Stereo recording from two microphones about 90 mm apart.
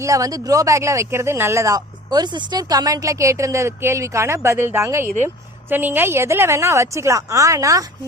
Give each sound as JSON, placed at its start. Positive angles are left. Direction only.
{"t": 0.0, "sound": "speech", "side_deg": -40}